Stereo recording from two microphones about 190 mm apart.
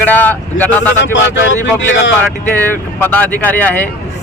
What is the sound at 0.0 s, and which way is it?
Speech, 10° left (ahead or behind).